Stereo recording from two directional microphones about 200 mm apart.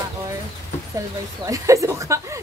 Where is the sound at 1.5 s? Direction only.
15° right (ahead or behind).